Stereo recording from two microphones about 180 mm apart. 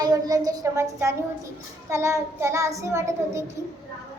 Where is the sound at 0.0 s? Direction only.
20° right (ahead or behind).